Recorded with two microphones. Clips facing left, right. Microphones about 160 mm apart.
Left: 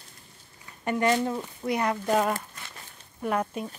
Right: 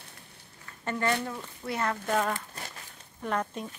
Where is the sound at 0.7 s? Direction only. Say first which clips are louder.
Left 5 dB; 15° left (ahead or behind).